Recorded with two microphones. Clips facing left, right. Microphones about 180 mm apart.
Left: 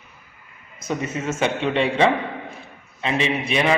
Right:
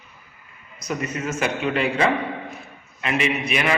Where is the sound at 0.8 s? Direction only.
25° left (ahead or behind).